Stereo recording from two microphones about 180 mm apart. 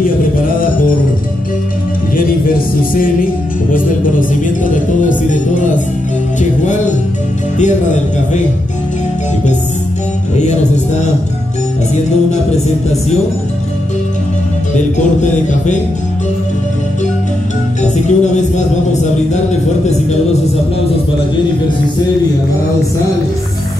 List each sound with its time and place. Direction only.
3.7 s music: 45° left (ahead or behind)
7.5 s speech: 40° left (ahead or behind)
18.0 s speech: 40° left (ahead or behind)